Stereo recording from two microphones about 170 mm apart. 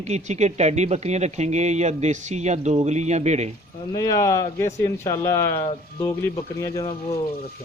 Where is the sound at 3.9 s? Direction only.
20° left (ahead or behind).